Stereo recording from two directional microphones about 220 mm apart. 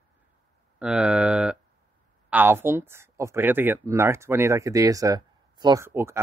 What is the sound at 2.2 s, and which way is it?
Speech, 10° right (ahead or behind).